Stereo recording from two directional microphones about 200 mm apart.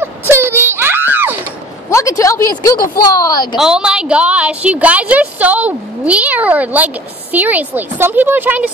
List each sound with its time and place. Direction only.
0.3 s a sound: 10° right (ahead or behind)
1.9 s a woman's voice: 15° left (ahead or behind)
3.5 s a woman's voice: 5° right (ahead or behind)